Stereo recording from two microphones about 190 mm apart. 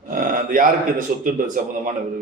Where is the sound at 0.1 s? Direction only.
45° right (ahead or behind).